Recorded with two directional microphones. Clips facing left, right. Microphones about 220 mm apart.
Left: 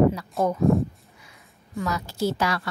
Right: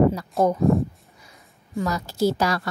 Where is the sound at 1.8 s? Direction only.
40° right (ahead or behind).